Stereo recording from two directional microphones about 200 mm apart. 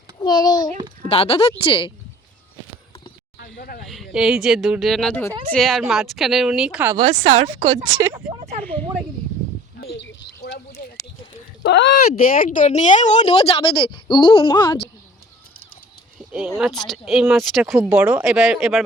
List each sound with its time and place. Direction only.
0.2 s a woman's voice: 20° left (ahead or behind)
3.3 s a sound: 50° left (ahead or behind)
3.8 s speech: centre (ahead or behind)
7.2 s speech: 35° right (ahead or behind)
8.3 s a sound: 30° right (ahead or behind)
9.8 s bird: 55° left (ahead or behind)
11.6 s speech: 60° left (ahead or behind)
12.2 s speech: 45° left (ahead or behind); by 14.8 s 20° left (ahead or behind)
16.6 s speech: centre (ahead or behind)